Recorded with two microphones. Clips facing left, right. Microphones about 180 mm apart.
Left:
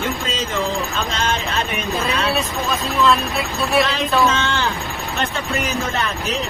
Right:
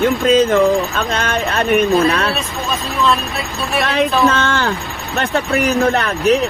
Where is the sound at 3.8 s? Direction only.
60° right (ahead or behind).